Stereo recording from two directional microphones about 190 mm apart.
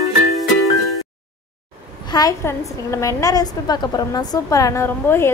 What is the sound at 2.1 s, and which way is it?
A woman's voice, 20° left (ahead or behind).